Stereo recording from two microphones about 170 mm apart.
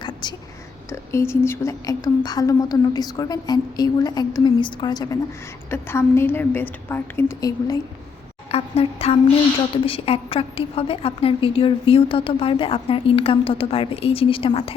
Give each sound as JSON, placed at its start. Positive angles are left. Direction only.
{"t": 0.0, "sound": "whispering", "side_deg": 25}
{"t": 1.1, "sound": "a woman's voice", "side_deg": 15}
{"t": 5.7, "sound": "a woman's voice", "side_deg": 15}
{"t": 8.5, "sound": "a woman's voice", "side_deg": 35}